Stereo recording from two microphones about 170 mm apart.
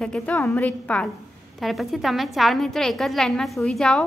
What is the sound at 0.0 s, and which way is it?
A woman's voice, 5° left (ahead or behind).